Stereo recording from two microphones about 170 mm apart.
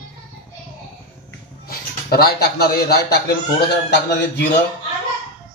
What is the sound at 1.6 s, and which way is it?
A man's voice, 65° left (ahead or behind).